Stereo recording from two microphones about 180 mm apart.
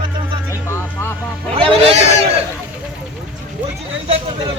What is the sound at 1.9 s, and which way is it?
Speech, 35° right (ahead or behind).